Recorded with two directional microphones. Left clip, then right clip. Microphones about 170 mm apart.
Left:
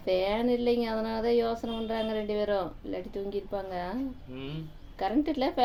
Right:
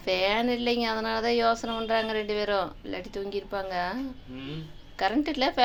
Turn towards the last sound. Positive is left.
turn(degrees=15)  # may be behind; listen again after turning